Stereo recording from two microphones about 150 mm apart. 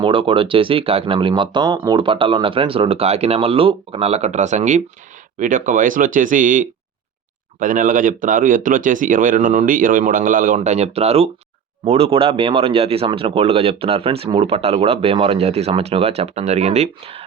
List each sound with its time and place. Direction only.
0.0 s speech: 35° right (ahead or behind)